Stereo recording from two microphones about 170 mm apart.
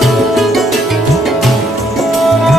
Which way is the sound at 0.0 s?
Centre (ahead or behind).